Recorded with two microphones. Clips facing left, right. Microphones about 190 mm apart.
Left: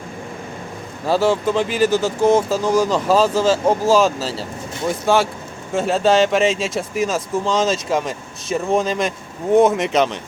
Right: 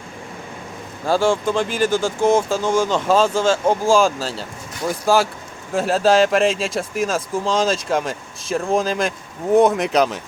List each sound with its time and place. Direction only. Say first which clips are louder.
1.0 s speech: left 1 dB; 5° left (ahead or behind)